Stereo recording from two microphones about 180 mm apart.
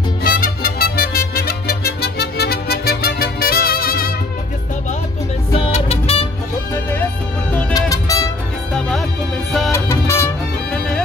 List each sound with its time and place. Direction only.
0.2 s music: 55° left (ahead or behind)
5.5 s music: 35° left (ahead or behind)
6.7 s music: 15° left (ahead or behind)
8.7 s music: centre (ahead or behind)
9.7 s music: 15° left (ahead or behind)
10.7 s music: 5° left (ahead or behind)